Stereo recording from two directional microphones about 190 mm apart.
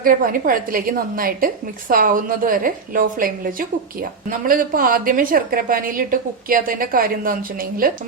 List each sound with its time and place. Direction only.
0.0 s a woman's voice: 45° right (ahead or behind)